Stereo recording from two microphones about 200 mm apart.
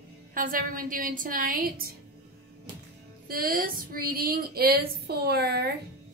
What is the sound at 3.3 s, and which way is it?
Speech, 45° right (ahead or behind).